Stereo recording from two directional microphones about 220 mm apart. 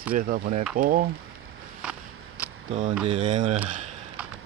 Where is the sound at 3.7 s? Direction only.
35° right (ahead or behind).